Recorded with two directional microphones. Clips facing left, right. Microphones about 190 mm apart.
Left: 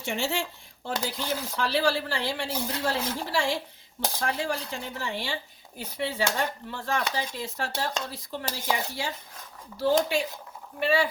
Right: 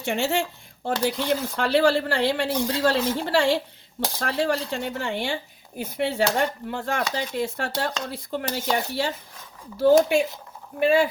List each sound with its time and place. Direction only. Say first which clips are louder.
0.0 s speech: right 5 dB; 60° right (ahead or behind)